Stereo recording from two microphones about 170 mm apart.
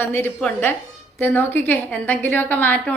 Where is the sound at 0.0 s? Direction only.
10° left (ahead or behind).